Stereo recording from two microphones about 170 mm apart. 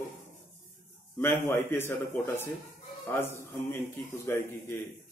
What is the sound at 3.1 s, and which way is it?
A man's voice, 15° left (ahead or behind).